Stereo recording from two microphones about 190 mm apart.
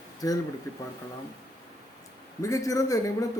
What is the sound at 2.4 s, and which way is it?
Speech, 15° left (ahead or behind).